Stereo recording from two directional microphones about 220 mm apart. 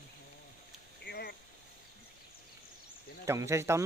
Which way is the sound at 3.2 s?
15° right (ahead or behind).